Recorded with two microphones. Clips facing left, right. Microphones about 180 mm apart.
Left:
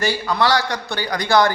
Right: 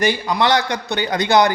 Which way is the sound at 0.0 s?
20° right (ahead or behind).